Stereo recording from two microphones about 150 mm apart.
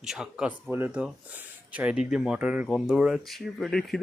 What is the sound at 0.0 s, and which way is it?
Speech, 5° right (ahead or behind).